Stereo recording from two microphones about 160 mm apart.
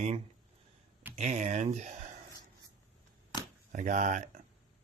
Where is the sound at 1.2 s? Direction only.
45° right (ahead or behind).